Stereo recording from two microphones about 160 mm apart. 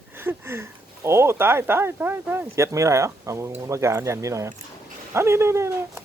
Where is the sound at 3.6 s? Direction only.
20° right (ahead or behind).